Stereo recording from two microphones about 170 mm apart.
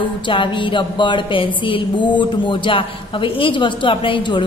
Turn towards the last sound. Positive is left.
turn(degrees=30)  # may be behind; listen again after turning